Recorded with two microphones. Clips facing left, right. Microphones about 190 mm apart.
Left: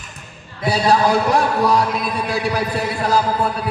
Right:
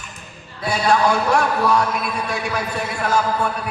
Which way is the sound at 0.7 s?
35° left (ahead or behind).